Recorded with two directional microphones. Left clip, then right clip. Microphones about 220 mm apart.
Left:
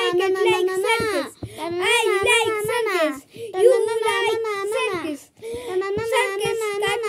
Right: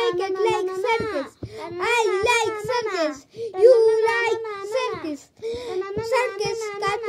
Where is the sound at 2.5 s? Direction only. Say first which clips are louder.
Left 3 dB; 45° left (ahead or behind).